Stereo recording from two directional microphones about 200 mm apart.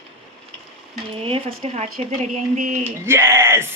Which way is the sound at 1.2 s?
30° right (ahead or behind).